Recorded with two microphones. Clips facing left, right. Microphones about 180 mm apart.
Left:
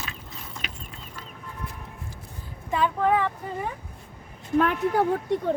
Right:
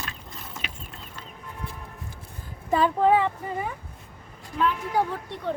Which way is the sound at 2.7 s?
30° right (ahead or behind).